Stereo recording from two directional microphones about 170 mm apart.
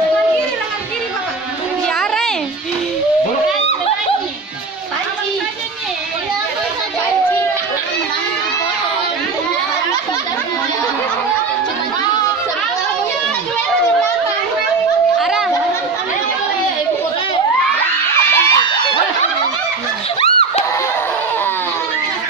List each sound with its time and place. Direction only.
2.0 s music: centre (ahead or behind)
15.1 s chatter: centre (ahead or behind)
18.3 s crowd: 15° left (ahead or behind)
20.2 s screaming: 35° left (ahead or behind)